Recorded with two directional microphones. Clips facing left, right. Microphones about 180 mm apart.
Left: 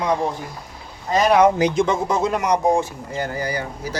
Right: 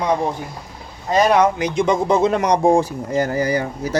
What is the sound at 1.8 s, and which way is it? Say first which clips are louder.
Speech: right 4 dB; 20° right (ahead or behind).